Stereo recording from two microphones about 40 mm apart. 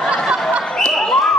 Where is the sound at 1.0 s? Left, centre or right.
Centre.